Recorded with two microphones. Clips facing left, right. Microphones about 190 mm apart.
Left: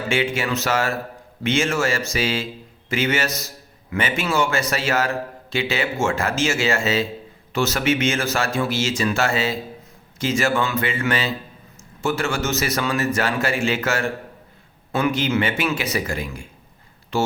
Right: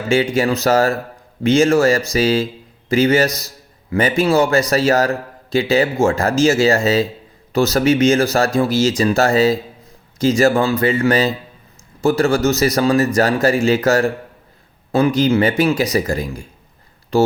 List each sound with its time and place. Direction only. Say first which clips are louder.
0.3 s a man's voice: right 8 dB; 35° right (ahead or behind)